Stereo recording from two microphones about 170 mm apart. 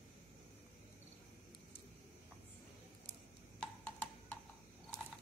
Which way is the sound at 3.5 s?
10° left (ahead or behind).